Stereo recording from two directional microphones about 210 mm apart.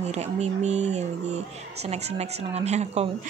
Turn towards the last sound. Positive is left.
turn(degrees=-30)  # may be behind; listen again after turning